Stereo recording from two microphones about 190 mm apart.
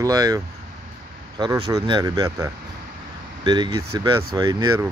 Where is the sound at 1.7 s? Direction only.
20° right (ahead or behind).